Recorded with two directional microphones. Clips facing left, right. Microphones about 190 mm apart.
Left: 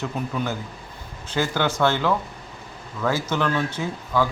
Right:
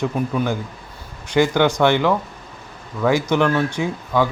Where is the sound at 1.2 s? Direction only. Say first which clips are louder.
Right 7 dB; 15° right (ahead or behind).